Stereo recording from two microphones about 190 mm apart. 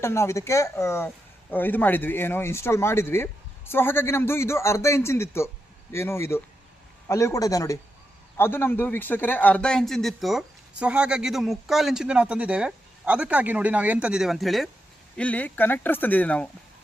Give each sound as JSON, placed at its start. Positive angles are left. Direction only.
{"t": 0.0, "sound": "a man's voice", "side_deg": 15}